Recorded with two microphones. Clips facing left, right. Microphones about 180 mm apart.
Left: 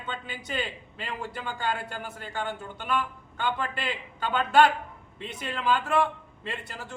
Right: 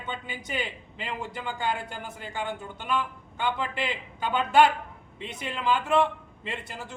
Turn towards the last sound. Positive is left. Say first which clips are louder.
# right 1 dB
turn(degrees=-15)  # may be behind; listen again after turning